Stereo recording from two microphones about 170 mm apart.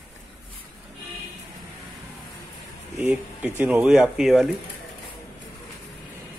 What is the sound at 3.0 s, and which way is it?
Speech, 10° right (ahead or behind).